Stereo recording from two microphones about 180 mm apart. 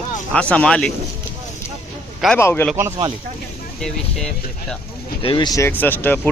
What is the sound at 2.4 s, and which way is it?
Speech, 15° left (ahead or behind).